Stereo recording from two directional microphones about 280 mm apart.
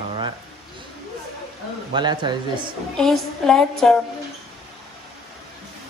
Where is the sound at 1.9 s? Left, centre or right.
Centre.